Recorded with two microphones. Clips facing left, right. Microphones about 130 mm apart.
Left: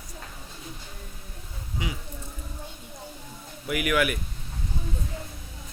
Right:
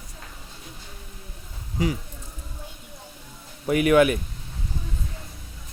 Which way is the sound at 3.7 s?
30° right (ahead or behind).